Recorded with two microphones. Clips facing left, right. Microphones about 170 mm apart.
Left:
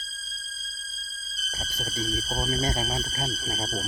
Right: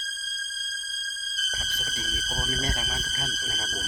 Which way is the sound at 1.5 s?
40° left (ahead or behind).